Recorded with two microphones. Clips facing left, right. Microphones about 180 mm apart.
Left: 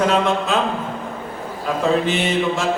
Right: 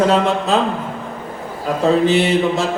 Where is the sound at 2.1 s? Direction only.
35° right (ahead or behind).